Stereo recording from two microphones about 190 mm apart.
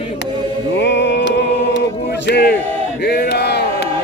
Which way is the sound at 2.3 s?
55° left (ahead or behind).